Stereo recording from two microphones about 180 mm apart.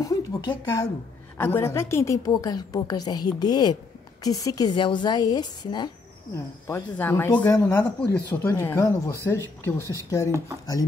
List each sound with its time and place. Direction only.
0.0 s a woman's voice: 20° left (ahead or behind)
6.7 s speech: 10° left (ahead or behind)